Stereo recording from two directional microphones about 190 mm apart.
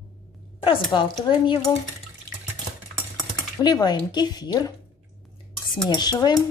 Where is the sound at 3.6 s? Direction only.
20° left (ahead or behind).